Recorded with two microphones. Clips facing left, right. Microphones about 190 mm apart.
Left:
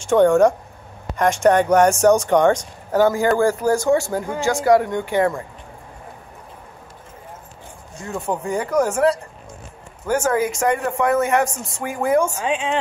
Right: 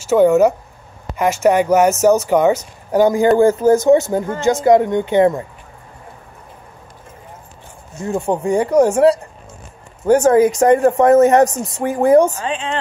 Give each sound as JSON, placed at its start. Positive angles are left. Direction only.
{"t": 0.0, "sound": "speech", "side_deg": -5}
{"t": 3.0, "sound": "speech", "side_deg": -15}
{"t": 8.0, "sound": "speech", "side_deg": -25}
{"t": 12.4, "sound": "speech", "side_deg": 10}